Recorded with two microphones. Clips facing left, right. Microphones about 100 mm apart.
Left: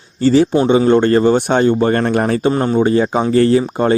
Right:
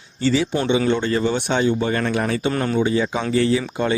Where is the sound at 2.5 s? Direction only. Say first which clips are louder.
Left 6 dB; 30° left (ahead or behind).